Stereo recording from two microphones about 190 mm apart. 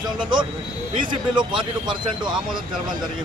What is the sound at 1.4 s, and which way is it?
Speech, 25° right (ahead or behind).